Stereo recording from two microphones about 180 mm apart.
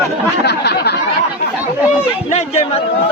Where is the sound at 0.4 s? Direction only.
65° left (ahead or behind).